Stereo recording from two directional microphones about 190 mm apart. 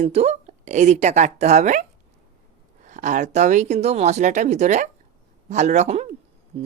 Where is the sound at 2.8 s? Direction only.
40° right (ahead or behind).